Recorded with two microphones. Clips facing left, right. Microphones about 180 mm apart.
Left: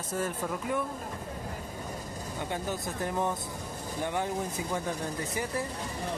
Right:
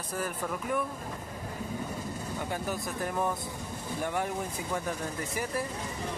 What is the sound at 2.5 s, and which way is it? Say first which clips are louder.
Speech: left 1 dB; 25° left (ahead or behind).